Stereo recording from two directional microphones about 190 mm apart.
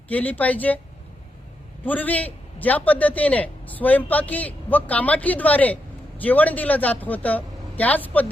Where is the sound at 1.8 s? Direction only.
10° left (ahead or behind).